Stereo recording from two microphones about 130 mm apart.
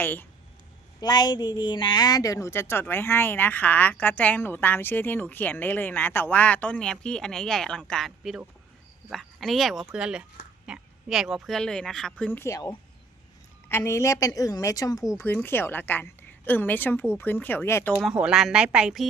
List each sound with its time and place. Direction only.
0.0 s a woman's voice: 15° left (ahead or behind)
1.0 s a woman's voice: 30° left (ahead or behind)
15.2 s a woman's voice: 15° left (ahead or behind)
17.9 s speech: 5° right (ahead or behind)